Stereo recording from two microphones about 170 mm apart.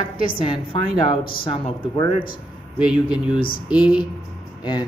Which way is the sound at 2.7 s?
5° right (ahead or behind).